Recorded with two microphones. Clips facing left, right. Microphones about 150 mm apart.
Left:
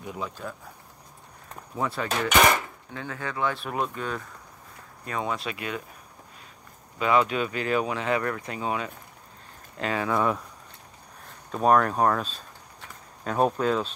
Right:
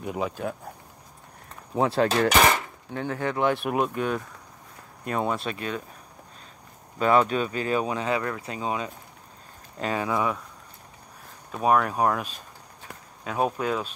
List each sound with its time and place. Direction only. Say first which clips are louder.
0.0 s speech: right 6 dB; 60° right (ahead or behind)
1.8 s speech: right 7 dB; 70° right (ahead or behind)
2.0 s speech: left 3 dB; 30° right (ahead or behind); by 5.5 s 5° right (ahead or behind)
7.0 s speech: right 2 dB; 40° right (ahead or behind); by 10.2 s 15° right (ahead or behind)
11.5 s speech: left 1 dB; 5° right (ahead or behind)